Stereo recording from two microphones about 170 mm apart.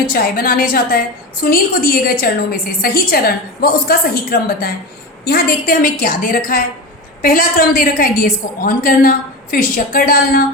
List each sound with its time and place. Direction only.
0.0 s a woman's voice: 60° left (ahead or behind)